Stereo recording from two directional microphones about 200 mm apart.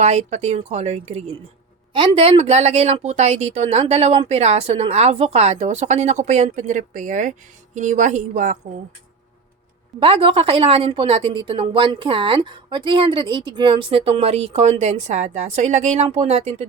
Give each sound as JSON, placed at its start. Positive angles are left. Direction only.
{"t": 0.0, "sound": "a woman's voice", "side_deg": -35}
{"t": 10.0, "sound": "a woman's voice", "side_deg": -25}